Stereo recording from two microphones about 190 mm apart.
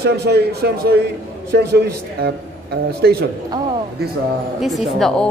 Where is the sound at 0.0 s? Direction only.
60° right (ahead or behind).